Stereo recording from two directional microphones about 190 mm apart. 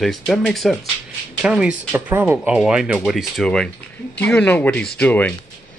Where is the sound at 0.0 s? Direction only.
Centre (ahead or behind).